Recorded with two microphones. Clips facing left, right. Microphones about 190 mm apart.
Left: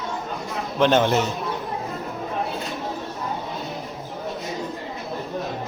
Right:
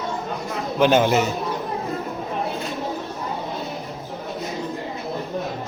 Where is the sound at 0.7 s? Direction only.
5° right (ahead or behind).